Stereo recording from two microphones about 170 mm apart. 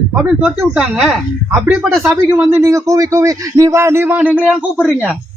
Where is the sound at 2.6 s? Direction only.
20° right (ahead or behind).